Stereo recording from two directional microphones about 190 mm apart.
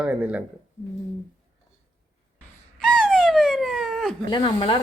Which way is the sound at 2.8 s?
5° left (ahead or behind).